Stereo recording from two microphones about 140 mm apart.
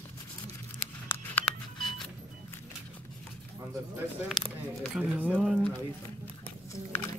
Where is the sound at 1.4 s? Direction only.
10° left (ahead or behind).